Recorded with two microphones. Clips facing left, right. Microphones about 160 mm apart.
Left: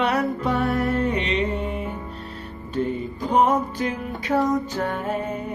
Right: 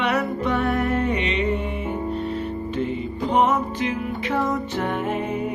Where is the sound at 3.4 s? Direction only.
35° left (ahead or behind).